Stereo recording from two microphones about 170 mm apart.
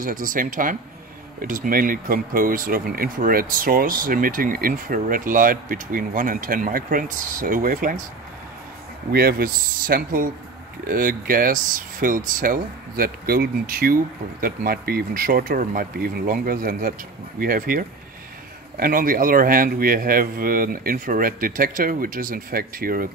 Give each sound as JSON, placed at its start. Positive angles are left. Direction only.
{"t": 0.0, "sound": "speech", "side_deg": -55}
{"t": 9.1, "sound": "speech", "side_deg": -60}